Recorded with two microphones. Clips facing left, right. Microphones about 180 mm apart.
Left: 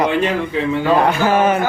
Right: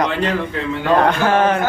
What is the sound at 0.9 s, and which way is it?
Music, 10° left (ahead or behind).